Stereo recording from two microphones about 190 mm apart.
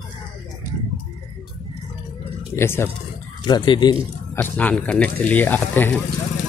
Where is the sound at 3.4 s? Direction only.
25° left (ahead or behind).